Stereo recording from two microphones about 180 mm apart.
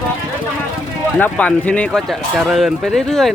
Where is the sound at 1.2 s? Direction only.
10° left (ahead or behind).